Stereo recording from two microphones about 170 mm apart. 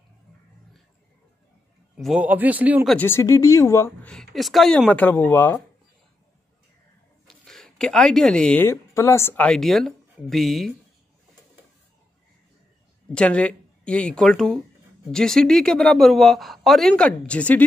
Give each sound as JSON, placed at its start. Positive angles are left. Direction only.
{"t": 2.0, "sound": "speech", "side_deg": 0}
{"t": 3.0, "sound": "speech", "side_deg": 15}
{"t": 4.1, "sound": "speech", "side_deg": 0}
{"t": 7.2, "sound": "speech", "side_deg": 5}
{"t": 13.1, "sound": "speech", "side_deg": 5}